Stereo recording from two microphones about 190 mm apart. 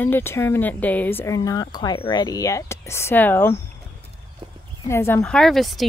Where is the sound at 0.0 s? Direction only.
10° left (ahead or behind).